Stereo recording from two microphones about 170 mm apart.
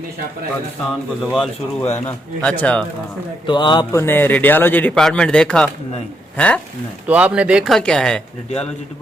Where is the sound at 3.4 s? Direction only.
25° left (ahead or behind).